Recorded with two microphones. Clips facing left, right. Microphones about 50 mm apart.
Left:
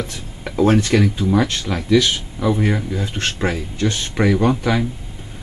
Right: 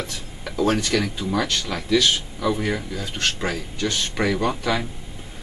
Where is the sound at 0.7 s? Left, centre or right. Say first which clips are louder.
Left 6 dB; left.